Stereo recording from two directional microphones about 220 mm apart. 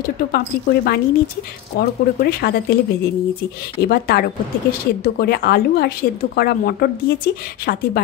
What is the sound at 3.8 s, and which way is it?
Speech, 45° left (ahead or behind).